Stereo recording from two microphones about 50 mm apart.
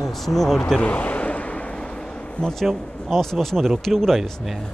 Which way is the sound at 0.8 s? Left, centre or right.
Left.